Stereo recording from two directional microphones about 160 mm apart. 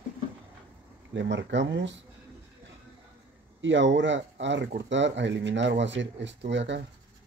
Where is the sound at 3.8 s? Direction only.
90° right.